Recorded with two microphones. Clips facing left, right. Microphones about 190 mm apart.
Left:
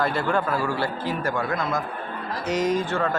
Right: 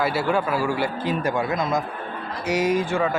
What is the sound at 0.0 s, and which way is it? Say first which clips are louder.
A man's voice: right 1 dB; 5° right (ahead or behind).